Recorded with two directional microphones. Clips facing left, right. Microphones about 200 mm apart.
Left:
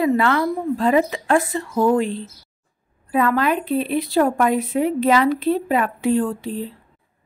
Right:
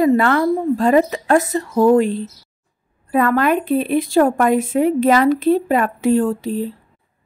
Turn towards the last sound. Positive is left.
turn(degrees=-40)  # may be behind; listen again after turning